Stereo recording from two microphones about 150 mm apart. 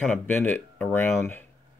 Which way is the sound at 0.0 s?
10° left (ahead or behind).